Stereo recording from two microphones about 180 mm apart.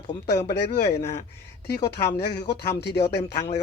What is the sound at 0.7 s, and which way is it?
Speech, 60° left (ahead or behind).